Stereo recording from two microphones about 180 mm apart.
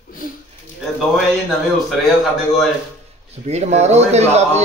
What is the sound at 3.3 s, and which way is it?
A man's voice, 40° right (ahead or behind).